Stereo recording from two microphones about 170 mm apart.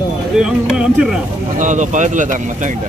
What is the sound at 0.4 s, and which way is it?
Speech, 5° right (ahead or behind).